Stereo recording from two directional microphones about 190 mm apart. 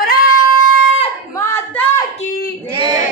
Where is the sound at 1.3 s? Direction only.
15° left (ahead or behind).